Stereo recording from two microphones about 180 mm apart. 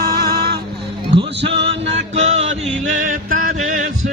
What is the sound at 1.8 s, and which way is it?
Music, 40° right (ahead or behind).